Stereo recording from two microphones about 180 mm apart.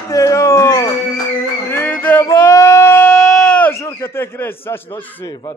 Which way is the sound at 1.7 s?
10° left (ahead or behind).